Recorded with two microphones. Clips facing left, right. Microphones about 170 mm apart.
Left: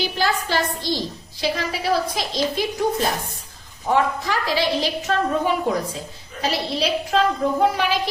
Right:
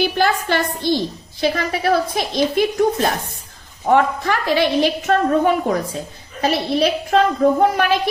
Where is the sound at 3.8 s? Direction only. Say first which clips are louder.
Right 4 dB; 60° right (ahead or behind).